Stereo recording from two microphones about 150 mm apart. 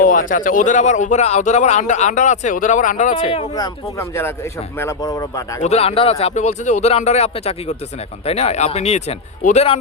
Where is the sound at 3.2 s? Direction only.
45° left (ahead or behind).